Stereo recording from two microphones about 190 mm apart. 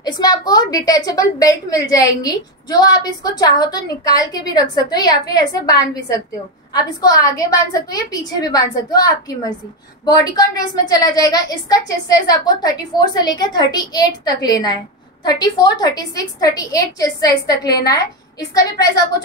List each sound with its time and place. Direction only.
0.0 s a woman's voice: 20° left (ahead or behind)